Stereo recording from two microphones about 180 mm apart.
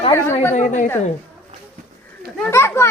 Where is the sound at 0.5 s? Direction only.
45° left (ahead or behind).